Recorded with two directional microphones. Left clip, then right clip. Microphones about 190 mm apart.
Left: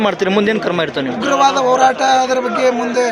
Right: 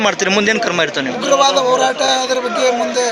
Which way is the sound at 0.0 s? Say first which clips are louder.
Right 1 dB; 5° left (ahead or behind).